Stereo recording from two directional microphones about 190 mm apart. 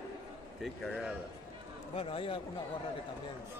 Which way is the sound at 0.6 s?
Centre (ahead or behind).